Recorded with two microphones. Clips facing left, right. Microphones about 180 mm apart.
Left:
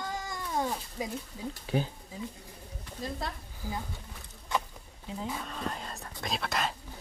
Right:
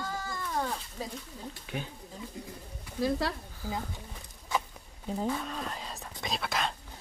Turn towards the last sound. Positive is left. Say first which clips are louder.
# even
turn(degrees=0)  # may be behind; listen again after turning